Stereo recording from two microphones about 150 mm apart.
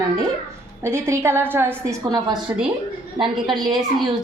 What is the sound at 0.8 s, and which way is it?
A woman's voice, 15° right (ahead or behind).